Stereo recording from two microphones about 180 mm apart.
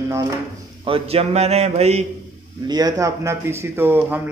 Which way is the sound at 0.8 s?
30° right (ahead or behind).